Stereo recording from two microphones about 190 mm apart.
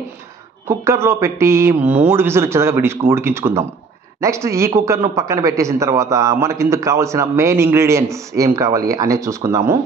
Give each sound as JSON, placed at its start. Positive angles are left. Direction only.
{"t": 0.7, "sound": "a man's voice", "side_deg": -15}